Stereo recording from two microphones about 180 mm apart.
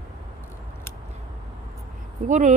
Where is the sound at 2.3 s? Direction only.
40° right (ahead or behind).